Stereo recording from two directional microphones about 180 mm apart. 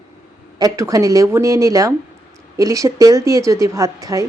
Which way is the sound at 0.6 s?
20° right (ahead or behind).